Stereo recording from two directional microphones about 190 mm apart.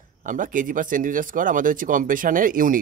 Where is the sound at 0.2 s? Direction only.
45° right (ahead or behind).